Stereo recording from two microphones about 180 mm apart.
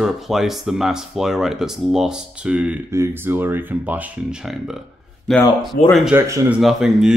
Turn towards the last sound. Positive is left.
turn(degrees=0)  # may be behind; listen again after turning